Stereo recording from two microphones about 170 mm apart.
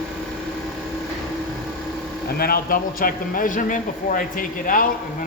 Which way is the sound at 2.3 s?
60° left (ahead or behind).